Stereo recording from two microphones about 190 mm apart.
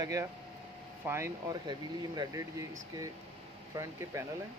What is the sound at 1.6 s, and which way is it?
Speech, 20° right (ahead or behind).